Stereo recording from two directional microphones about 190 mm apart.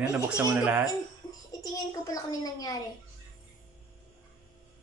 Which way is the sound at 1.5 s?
20° left (ahead or behind).